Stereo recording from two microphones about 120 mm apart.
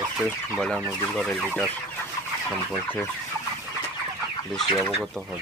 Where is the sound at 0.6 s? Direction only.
5° left (ahead or behind).